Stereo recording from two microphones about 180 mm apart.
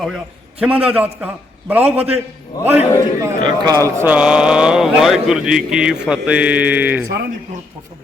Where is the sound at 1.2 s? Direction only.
10° right (ahead or behind).